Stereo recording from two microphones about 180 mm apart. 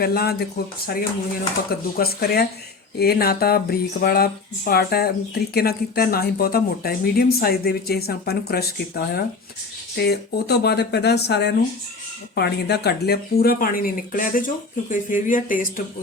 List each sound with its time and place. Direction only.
0.0 s speech: 60° left (ahead or behind)